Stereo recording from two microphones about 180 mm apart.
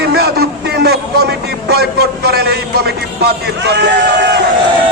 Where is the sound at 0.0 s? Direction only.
65° right (ahead or behind).